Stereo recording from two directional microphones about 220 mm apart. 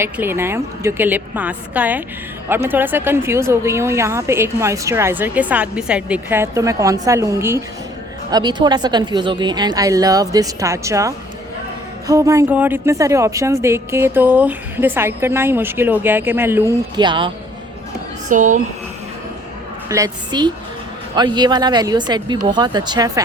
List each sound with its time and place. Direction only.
0.0 s a woman's voice: 10° right (ahead or behind)
18.3 s speech: 35° right (ahead or behind)
19.9 s a woman's voice: 15° right (ahead or behind)